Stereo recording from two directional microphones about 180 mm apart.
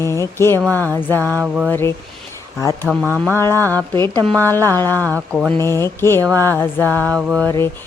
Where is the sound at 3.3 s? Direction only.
15° left (ahead or behind).